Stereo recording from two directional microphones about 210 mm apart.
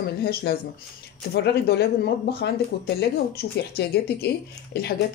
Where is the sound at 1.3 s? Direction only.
50° left (ahead or behind).